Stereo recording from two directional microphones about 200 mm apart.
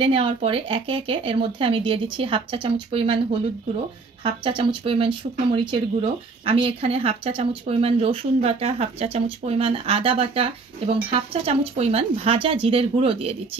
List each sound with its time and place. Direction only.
0.0 s speech: 25° right (ahead or behind)